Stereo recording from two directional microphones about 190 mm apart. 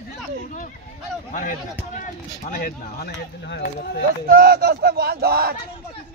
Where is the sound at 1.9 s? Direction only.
45° left (ahead or behind); by 4.0 s 60° left (ahead or behind).